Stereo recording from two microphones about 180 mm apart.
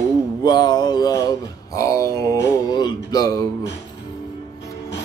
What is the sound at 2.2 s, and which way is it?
Music, 20° left (ahead or behind).